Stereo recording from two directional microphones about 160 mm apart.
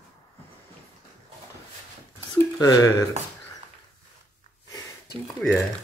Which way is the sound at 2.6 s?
20° left (ahead or behind).